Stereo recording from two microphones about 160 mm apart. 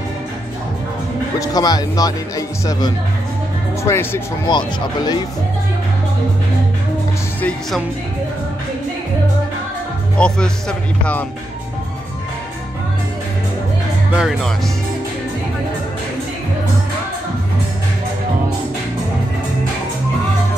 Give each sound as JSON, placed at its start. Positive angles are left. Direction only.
{"t": 1.4, "sound": "speech", "side_deg": 25}
{"t": 4.5, "sound": "speech", "side_deg": 25}
{"t": 10.1, "sound": "speech", "side_deg": 5}
{"t": 14.1, "sound": "speech", "side_deg": -5}